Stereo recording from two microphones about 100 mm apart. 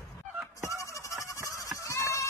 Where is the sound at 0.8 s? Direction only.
30° left (ahead or behind).